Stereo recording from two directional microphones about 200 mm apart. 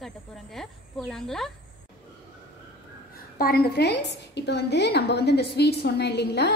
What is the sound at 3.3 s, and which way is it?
A woman's voice, 50° left (ahead or behind).